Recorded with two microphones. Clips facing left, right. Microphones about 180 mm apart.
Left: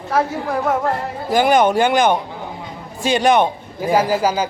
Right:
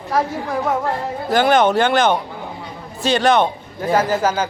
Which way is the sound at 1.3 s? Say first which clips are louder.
Even; 10° left (ahead or behind).